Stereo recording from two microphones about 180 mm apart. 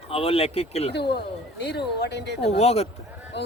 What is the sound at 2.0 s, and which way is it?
Speech, 70° left (ahead or behind).